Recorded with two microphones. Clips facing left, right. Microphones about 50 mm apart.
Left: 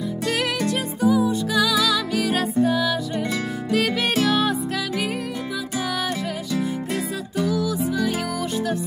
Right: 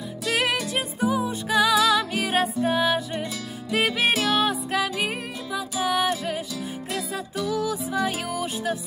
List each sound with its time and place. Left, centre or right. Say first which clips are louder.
1.0 s music: left 6 dB; right